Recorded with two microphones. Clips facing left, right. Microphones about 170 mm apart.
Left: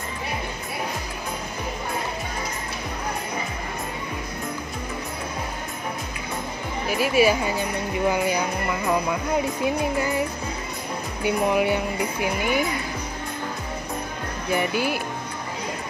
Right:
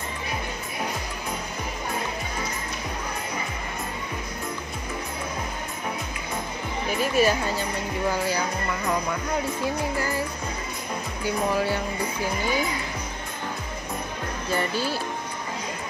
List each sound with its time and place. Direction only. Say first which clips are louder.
6.9 s speech: left 3 dB; 10° left (ahead or behind)
9.7 s music: left 3 dB; 20° left (ahead or behind)
11.2 s speech: left 4 dB; 20° left (ahead or behind)
14.5 s speech: left 3 dB; 15° left (ahead or behind)